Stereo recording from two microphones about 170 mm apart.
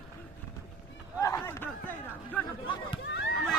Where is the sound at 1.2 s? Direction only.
15° left (ahead or behind).